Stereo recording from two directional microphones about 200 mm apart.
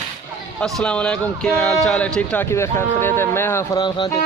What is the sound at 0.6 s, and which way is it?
Speech, 5° left (ahead or behind).